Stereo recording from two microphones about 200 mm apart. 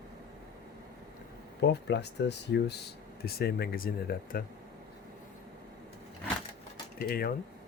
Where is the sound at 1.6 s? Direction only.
55° left (ahead or behind).